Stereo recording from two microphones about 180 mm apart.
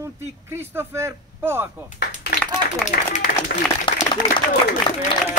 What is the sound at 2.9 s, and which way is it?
Speech, 50° left (ahead or behind).